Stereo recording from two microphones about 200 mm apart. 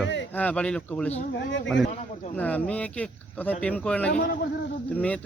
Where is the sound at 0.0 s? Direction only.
65° left (ahead or behind).